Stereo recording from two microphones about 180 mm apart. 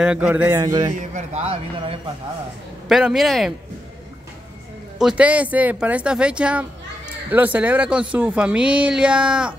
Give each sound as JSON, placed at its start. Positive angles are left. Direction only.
{"t": 0.0, "sound": "speech", "side_deg": -5}
{"t": 0.6, "sound": "a man's voice", "side_deg": -25}
{"t": 0.9, "sound": "a man's voice", "side_deg": -40}
{"t": 2.9, "sound": "speech", "side_deg": 0}
{"t": 4.9, "sound": "speech", "side_deg": -5}